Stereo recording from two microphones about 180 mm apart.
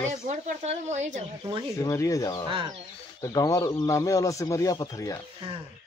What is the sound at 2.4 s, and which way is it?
Speech, 25° right (ahead or behind).